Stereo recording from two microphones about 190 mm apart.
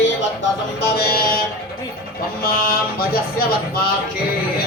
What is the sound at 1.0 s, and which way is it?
Speech, 55° left (ahead or behind).